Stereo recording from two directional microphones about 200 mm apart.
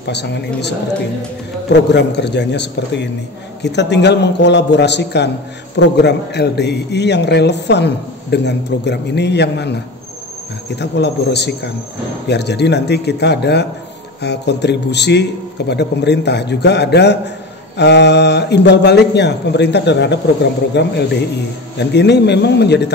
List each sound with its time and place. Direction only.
0.0 s a man's voice: 60° left (ahead or behind)
10.8 s a man's voice: 60° left (ahead or behind)